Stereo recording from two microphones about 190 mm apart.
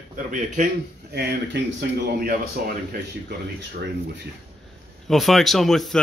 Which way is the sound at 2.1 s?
50° right (ahead or behind).